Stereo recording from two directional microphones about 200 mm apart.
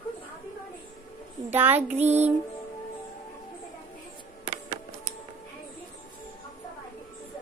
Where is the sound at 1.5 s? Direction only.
10° right (ahead or behind).